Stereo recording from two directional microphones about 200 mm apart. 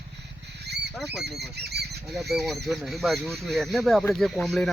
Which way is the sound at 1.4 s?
55° right (ahead or behind).